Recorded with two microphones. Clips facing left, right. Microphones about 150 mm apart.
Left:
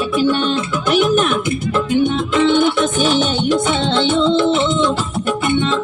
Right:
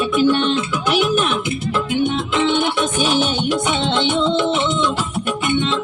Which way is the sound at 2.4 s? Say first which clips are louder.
Left 5 dB; 15° right (ahead or behind).